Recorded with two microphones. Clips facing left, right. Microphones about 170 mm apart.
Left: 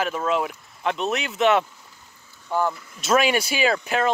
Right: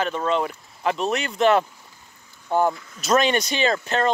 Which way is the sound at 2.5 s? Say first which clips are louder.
Right 3 dB; 20° right (ahead or behind).